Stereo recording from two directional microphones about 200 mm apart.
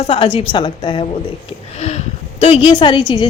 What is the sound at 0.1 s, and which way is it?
Speech, 25° left (ahead or behind).